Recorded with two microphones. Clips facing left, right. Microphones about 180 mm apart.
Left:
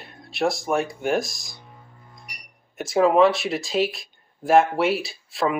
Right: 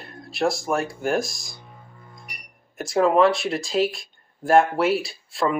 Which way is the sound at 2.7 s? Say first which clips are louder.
Left 1 dB; centre (ahead or behind).